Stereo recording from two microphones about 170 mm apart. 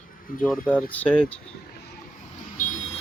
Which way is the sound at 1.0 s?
10° left (ahead or behind).